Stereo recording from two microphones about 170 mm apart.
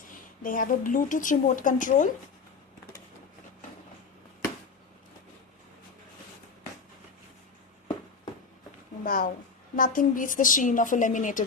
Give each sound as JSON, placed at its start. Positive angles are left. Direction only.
{"t": 0.1, "sound": "a woman's voice", "side_deg": 55}
{"t": 9.0, "sound": "a woman's voice", "side_deg": 55}